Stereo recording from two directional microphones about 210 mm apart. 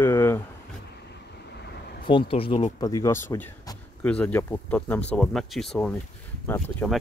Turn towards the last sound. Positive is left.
turn(degrees=5)  # may be behind; listen again after turning